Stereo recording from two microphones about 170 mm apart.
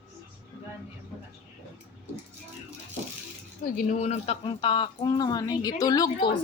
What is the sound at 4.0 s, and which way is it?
A woman's voice, 40° left (ahead or behind).